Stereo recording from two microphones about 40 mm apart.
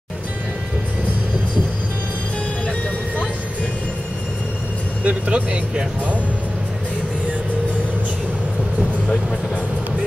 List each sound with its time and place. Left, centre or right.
5.0 s speech: right